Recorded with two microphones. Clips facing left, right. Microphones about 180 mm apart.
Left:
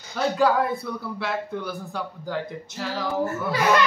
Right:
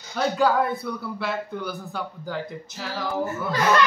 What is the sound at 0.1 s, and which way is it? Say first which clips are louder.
A man's voice: even; centre (ahead or behind).